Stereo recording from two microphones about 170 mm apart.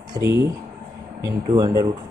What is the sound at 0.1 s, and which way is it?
Speech, 15° right (ahead or behind).